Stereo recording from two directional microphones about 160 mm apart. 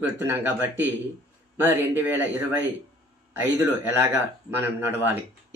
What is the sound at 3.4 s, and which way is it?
Speech, 15° right (ahead or behind).